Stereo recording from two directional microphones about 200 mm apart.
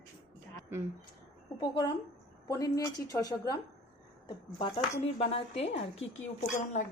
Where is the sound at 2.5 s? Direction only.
15° left (ahead or behind).